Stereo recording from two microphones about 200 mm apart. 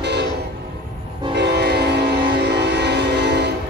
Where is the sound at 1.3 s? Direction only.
55° right (ahead or behind).